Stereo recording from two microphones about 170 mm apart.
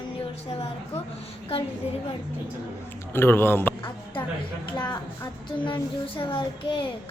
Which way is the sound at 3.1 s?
15° left (ahead or behind).